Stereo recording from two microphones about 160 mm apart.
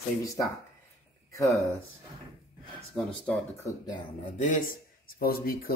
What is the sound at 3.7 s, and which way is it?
Speech, 25° left (ahead or behind).